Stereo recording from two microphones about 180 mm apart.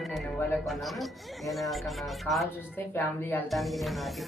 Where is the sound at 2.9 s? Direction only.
10° left (ahead or behind).